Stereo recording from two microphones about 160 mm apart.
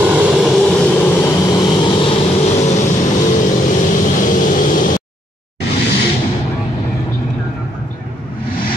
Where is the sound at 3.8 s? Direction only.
55° left (ahead or behind).